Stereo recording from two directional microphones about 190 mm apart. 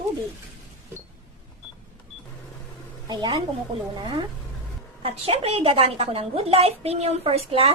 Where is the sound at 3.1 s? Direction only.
30° right (ahead or behind).